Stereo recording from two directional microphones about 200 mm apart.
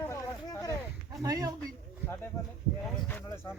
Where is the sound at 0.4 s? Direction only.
20° left (ahead or behind).